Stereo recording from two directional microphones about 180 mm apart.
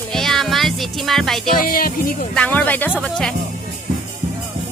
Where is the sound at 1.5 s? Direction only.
50° left (ahead or behind).